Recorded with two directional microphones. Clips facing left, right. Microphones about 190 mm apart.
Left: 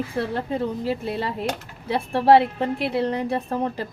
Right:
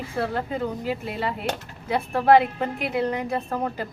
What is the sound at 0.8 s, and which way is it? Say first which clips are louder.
A woman's voice: left 2 dB; 35° left (ahead or behind).